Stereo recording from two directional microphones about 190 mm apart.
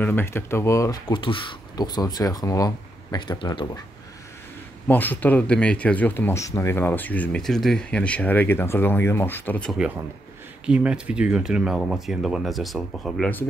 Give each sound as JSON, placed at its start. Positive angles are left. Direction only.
{"t": 0.0, "sound": "speech", "side_deg": 10}
{"t": 4.8, "sound": "speech", "side_deg": 10}
{"t": 9.8, "sound": "speech", "side_deg": -10}